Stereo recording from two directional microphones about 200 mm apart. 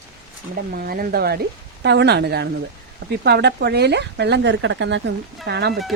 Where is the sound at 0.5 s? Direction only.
50° right (ahead or behind).